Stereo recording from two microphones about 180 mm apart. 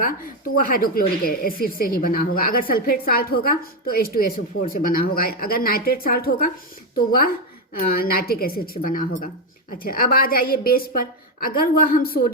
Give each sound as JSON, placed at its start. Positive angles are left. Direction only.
{"t": 0.5, "sound": "a woman's voice", "side_deg": 55}